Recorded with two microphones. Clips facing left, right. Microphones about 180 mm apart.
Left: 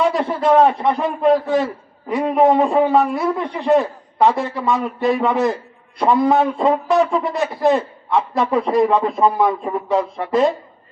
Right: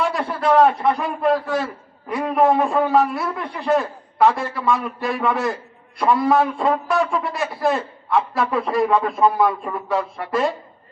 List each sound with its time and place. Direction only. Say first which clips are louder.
0.1 s a man's voice: left 3 dB; 20° left (ahead or behind)